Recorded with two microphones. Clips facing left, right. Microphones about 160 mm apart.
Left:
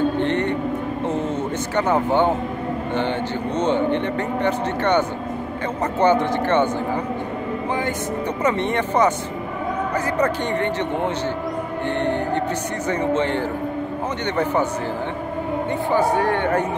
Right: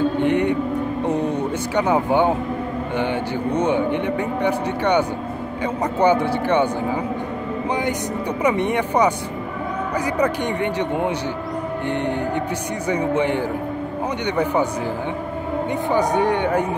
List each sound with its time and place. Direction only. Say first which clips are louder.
0.2 s mantra: right 3 dB; 10° right (ahead or behind)
1.0 s a sound: right 2 dB; 15° right (ahead or behind)
3.0 s speech: right 2 dB; 10° right (ahead or behind)
8.4 s speech: right 2 dB; 10° right (ahead or behind)
10.1 s speech: even; 10° right (ahead or behind)
12.8 s speech: right 1 dB; 10° right (ahead or behind)
15.9 s speech: even; 20° right (ahead or behind)